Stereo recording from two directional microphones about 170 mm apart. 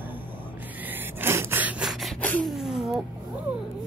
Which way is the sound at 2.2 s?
10° left (ahead or behind).